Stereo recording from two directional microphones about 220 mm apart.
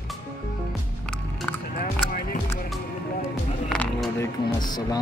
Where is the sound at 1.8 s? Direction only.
45° left (ahead or behind).